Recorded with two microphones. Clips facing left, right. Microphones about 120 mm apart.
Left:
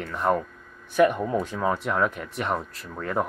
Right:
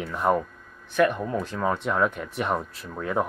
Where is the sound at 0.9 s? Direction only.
15° left (ahead or behind); by 3.2 s 5° right (ahead or behind).